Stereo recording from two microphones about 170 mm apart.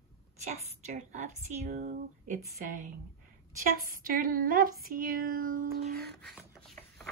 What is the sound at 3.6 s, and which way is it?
Speech, 55° right (ahead or behind).